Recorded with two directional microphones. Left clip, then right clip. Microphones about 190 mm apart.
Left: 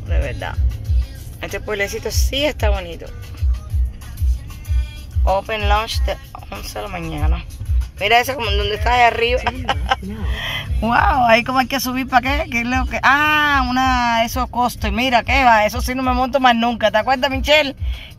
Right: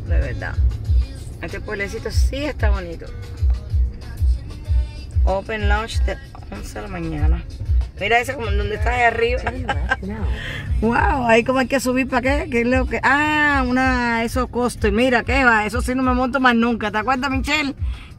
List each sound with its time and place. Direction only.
0.1 s music: 20° left (ahead or behind)
1.4 s a man's voice: 20° left (ahead or behind)
5.5 s a man's voice: 15° left (ahead or behind); by 17.7 s 5° right (ahead or behind)